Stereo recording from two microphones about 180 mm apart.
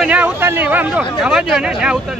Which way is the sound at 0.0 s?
10° right (ahead or behind).